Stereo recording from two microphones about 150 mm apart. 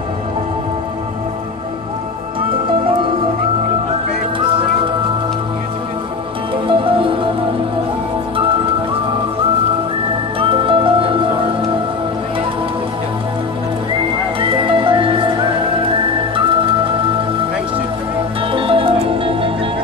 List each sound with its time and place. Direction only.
6.5 s music: 35° right (ahead or behind)
10.4 s music: 35° right (ahead or behind)
14.4 s music: 35° right (ahead or behind)
18.5 s music: 35° right (ahead or behind)